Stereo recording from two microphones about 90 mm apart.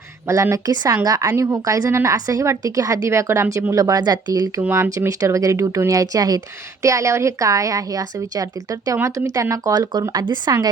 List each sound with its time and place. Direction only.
0.5 s a woman's voice: 45° right (ahead or behind)
4.7 s speech: 30° right (ahead or behind)
5.0 s a woman's voice: 40° right (ahead or behind)